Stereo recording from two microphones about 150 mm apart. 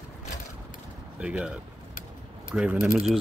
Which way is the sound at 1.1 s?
5° right (ahead or behind).